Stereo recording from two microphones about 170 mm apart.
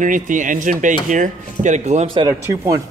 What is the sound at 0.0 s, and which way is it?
Speech, 50° right (ahead or behind).